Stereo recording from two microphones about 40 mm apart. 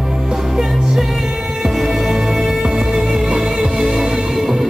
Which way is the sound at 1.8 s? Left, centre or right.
Centre.